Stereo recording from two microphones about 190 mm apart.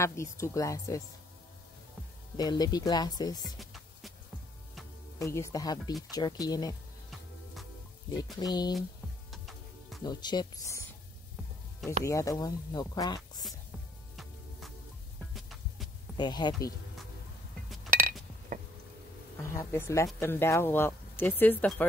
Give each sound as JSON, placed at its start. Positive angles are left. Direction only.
{"t": 0.0, "sound": "speech", "side_deg": 15}
{"t": 2.3, "sound": "speech", "side_deg": 20}
{"t": 3.5, "sound": "music", "side_deg": 0}
{"t": 5.2, "sound": "speech", "side_deg": 15}
{"t": 8.4, "sound": "speech", "side_deg": 20}
{"t": 9.3, "sound": "music", "side_deg": 0}
{"t": 10.0, "sound": "speech", "side_deg": 20}
{"t": 12.0, "sound": "speech", "side_deg": 15}
{"t": 15.3, "sound": "heart sounds", "side_deg": 0}
{"t": 16.2, "sound": "speech", "side_deg": 20}
{"t": 17.8, "sound": "chink", "side_deg": -45}
{"t": 18.5, "sound": "a sound", "side_deg": -45}
{"t": 19.4, "sound": "speech", "side_deg": 15}